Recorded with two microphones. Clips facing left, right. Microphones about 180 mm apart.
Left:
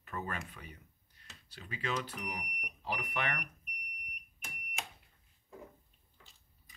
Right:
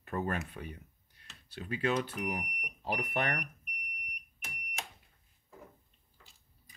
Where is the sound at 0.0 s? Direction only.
45° right (ahead or behind).